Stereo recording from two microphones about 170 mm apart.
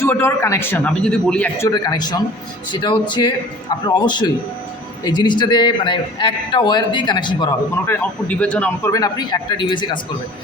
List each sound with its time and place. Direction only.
0.0 s a man's voice: 15° left (ahead or behind)
7.9 s a man's voice: 10° left (ahead or behind)
8.9 s a man's voice: 25° left (ahead or behind)